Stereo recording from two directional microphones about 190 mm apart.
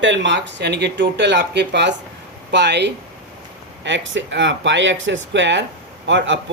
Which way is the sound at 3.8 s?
75° right (ahead or behind).